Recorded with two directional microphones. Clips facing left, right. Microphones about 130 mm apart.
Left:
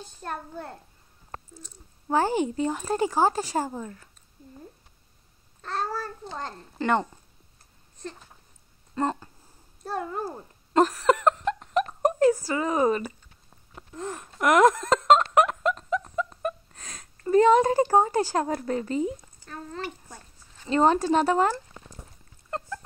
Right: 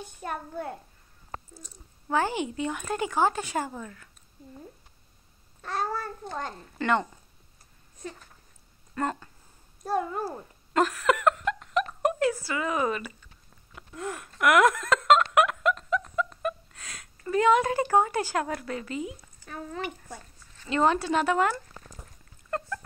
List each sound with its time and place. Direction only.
0.0 s a child's voice: 5° right (ahead or behind)
2.0 s speech: 40° left (ahead or behind)
5.6 s babbling: 5° right (ahead or behind)
6.8 s speech: 35° left (ahead or behind)
8.9 s speech: 25° left (ahead or behind)
9.8 s a child's voice: 5° right (ahead or behind)
10.7 s a sound: 40° left (ahead or behind)
13.7 s speech: 35° left (ahead or behind)
15.0 s a sound: 35° left (ahead or behind)
17.3 s speech: 40° left (ahead or behind)
19.4 s speech: 10° right (ahead or behind)
20.6 s speech: 35° left (ahead or behind)
22.5 s dog: 25° left (ahead or behind)